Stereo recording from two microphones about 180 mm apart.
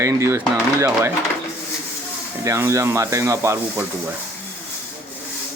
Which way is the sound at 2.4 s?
15° right (ahead or behind).